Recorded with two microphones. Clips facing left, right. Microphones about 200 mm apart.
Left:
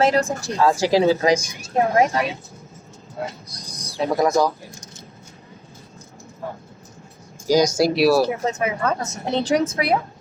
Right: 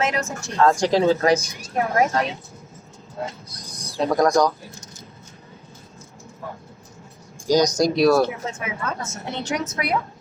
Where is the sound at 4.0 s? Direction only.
5° left (ahead or behind).